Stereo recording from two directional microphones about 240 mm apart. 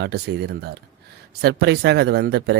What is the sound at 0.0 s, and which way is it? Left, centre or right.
Speech, right.